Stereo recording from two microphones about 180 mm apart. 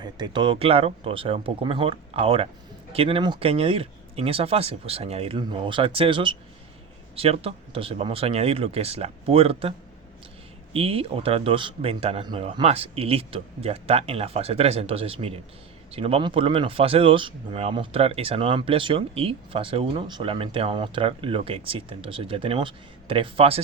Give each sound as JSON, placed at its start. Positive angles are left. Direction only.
{"t": 0.0, "sound": "speech", "side_deg": -25}